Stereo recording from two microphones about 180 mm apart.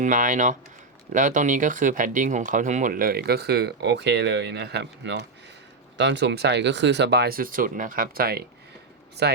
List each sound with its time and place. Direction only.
0.0 s speech: 45° right (ahead or behind); by 9.4 s 65° right (ahead or behind)